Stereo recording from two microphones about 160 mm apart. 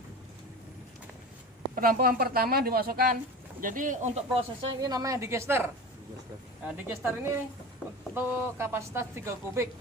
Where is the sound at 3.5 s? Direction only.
55° right (ahead or behind).